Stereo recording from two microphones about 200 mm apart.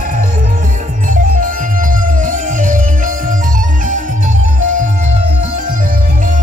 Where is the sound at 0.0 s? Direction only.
45° right (ahead or behind).